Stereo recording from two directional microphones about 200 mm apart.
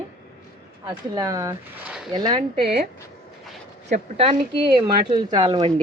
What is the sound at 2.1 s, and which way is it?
Speech, 20° right (ahead or behind).